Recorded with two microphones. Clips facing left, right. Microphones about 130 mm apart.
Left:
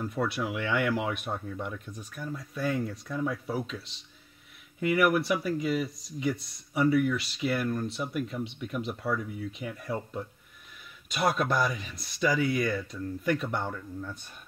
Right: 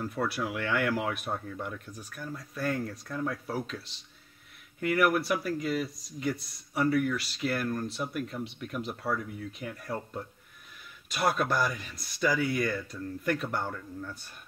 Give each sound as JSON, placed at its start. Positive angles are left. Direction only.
{"t": 0.0, "sound": "speech", "side_deg": 0}
{"t": 0.6, "sound": "speech", "side_deg": 15}
{"t": 0.8, "sound": "speech", "side_deg": 0}